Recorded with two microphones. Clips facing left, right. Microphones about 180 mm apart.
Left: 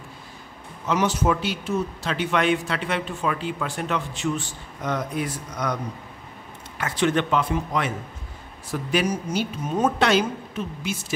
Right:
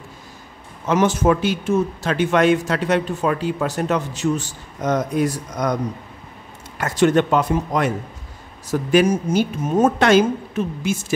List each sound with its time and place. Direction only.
0.8 s speech: 50° right (ahead or behind)
6.8 s speech: 45° right (ahead or behind)